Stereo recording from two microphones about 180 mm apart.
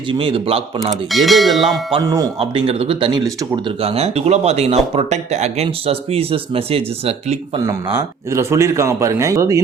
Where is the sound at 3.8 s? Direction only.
35° right (ahead or behind).